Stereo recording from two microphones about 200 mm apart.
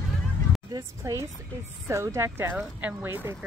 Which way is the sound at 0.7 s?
20° right (ahead or behind).